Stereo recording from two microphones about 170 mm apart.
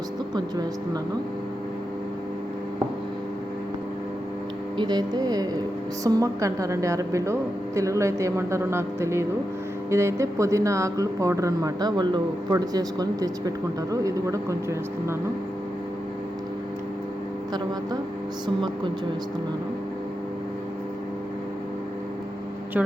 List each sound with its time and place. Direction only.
0.3 s speech: 25° right (ahead or behind)
4.8 s a woman's voice: 25° right (ahead or behind)